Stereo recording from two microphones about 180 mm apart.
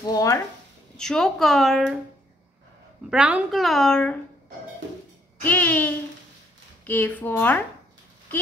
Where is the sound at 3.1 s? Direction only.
5° right (ahead or behind).